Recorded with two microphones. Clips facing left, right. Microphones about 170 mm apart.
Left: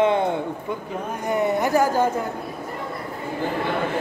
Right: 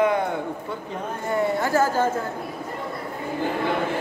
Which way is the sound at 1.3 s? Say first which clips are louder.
Left 2 dB; 20° left (ahead or behind).